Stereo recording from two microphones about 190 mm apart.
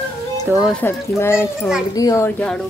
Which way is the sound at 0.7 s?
10° left (ahead or behind).